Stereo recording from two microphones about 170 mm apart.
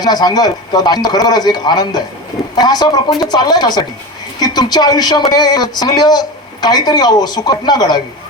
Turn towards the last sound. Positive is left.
turn(degrees=25)  # may be behind; listen again after turning